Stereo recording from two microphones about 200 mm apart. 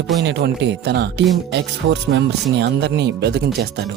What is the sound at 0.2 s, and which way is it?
Speech, 60° right (ahead or behind).